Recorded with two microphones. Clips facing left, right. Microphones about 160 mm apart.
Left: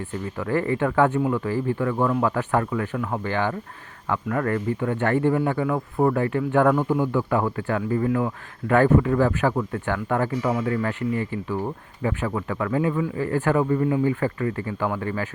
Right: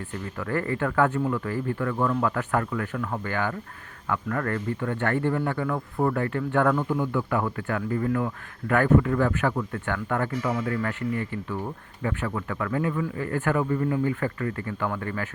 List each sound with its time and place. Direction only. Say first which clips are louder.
0.3 s speech: left 4 dB; 20° left (ahead or behind)
6.7 s speech: left 4 dB; 30° left (ahead or behind)
11.4 s speech: left 4 dB; 30° left (ahead or behind)